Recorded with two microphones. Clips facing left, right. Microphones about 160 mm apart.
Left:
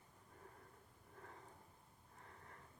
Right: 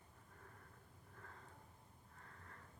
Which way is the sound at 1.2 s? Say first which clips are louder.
Left 2 dB; 20° left (ahead or behind).